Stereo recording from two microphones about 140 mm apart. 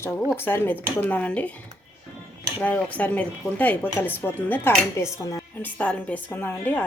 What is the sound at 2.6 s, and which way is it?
Speech, 10° left (ahead or behind).